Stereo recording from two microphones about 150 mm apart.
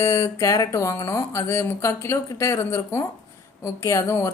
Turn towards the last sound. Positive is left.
turn(degrees=20)  # may be behind; listen again after turning